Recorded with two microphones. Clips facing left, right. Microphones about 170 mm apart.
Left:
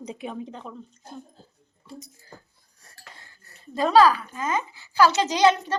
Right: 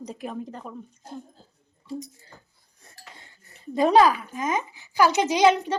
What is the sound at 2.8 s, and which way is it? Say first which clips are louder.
Speech: right 1 dB; 20° right (ahead or behind).